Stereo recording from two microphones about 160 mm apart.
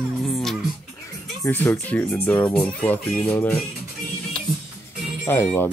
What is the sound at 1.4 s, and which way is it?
Speech, 15° left (ahead or behind).